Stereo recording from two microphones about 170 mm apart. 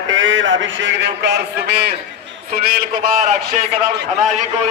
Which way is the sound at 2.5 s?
60° right (ahead or behind).